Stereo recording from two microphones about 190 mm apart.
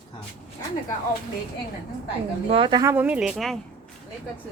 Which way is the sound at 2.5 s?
25° right (ahead or behind).